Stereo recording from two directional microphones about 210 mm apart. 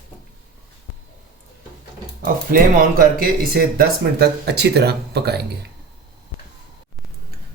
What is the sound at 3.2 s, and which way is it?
Speech, 45° right (ahead or behind).